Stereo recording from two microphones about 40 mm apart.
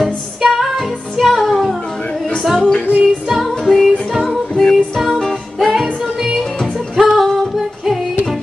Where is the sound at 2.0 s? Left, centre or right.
Left.